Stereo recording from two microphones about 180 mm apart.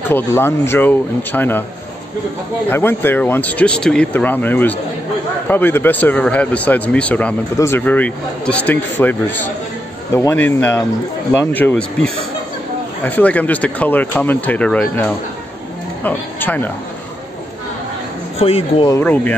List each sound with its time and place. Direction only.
0.1 s speech: 15° left (ahead or behind)
2.7 s speech: 10° left (ahead or behind)
18.4 s speech: 35° left (ahead or behind)
18.9 s speech: 10° left (ahead or behind)